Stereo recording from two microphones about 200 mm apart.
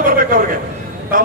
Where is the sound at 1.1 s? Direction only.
45° right (ahead or behind).